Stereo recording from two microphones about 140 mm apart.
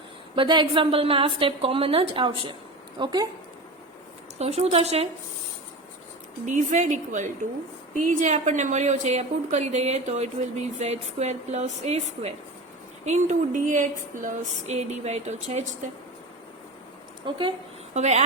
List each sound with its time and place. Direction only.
0.3 s a woman's voice: 35° right (ahead or behind)
4.4 s speech: 50° right (ahead or behind)
6.4 s a sound: 60° right (ahead or behind)
10.8 s speech: 50° right (ahead or behind)
13.1 s a sound: 60° right (ahead or behind)
17.2 s a woman's voice: 35° right (ahead or behind)
17.9 s speech: 55° right (ahead or behind)